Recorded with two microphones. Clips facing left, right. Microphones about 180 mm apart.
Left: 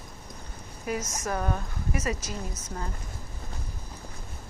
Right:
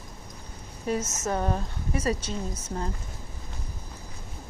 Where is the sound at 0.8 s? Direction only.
30° right (ahead or behind).